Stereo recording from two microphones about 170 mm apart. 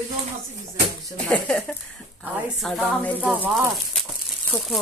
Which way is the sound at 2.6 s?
5° left (ahead or behind).